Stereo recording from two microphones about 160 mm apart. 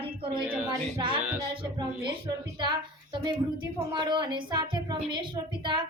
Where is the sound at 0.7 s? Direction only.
25° right (ahead or behind).